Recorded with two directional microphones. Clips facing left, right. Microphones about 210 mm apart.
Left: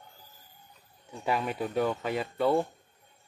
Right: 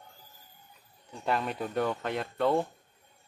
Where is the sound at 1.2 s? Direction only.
5° left (ahead or behind).